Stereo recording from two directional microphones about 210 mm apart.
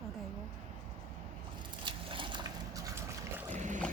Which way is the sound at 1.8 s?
25° right (ahead or behind).